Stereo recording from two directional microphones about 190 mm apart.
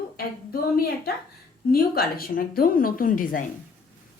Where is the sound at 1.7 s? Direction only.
55° left (ahead or behind).